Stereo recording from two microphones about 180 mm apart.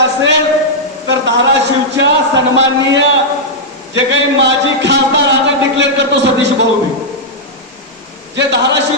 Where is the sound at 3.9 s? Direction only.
80° right.